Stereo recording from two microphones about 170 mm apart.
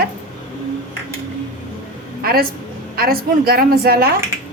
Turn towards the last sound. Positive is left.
turn(degrees=-65)  # may be behind; listen again after turning